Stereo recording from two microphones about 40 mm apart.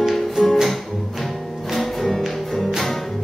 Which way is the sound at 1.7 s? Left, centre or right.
Centre.